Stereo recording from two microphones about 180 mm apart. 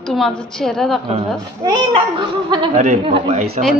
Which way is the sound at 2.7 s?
40° right (ahead or behind).